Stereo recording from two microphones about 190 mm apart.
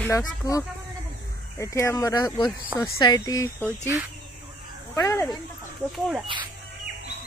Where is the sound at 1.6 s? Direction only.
15° left (ahead or behind).